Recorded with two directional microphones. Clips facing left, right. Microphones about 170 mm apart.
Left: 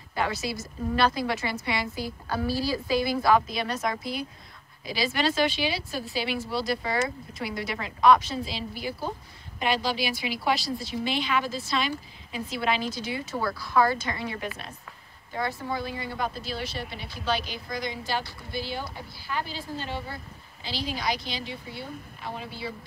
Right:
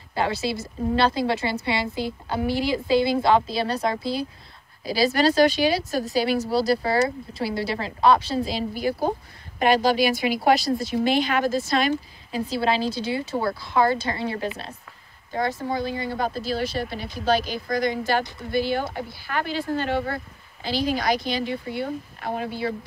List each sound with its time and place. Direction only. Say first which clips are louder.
0.1 s a woman's voice: right 4 dB; 30° right (ahead or behind); by 20.2 s 60° right (ahead or behind)
20.6 s speech: right 7 dB; 50° right (ahead or behind)